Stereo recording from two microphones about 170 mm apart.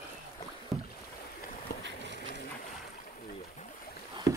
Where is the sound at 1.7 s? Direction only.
60° left (ahead or behind).